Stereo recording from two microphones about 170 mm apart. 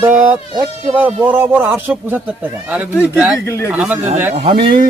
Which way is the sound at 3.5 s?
15° left (ahead or behind).